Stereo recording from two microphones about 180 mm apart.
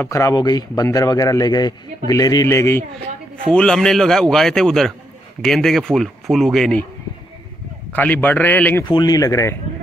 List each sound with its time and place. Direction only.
0.0 s speech: 15° left (ahead or behind)
3.5 s speech: 5° left (ahead or behind)
7.9 s a man's voice: 10° left (ahead or behind)
8.8 s speech: 25° left (ahead or behind)